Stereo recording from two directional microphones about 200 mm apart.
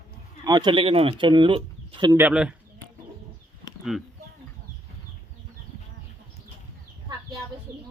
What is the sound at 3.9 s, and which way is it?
Speech, centre (ahead or behind).